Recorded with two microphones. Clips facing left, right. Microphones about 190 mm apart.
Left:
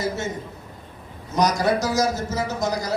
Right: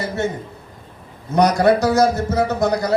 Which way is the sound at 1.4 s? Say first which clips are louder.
Right 6 dB; 60° right (ahead or behind).